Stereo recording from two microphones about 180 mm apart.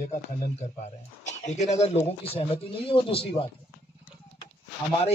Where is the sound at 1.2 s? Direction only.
40° left (ahead or behind).